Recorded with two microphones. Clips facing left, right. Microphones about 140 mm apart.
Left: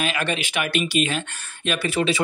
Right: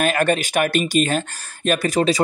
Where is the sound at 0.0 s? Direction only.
45° right (ahead or behind).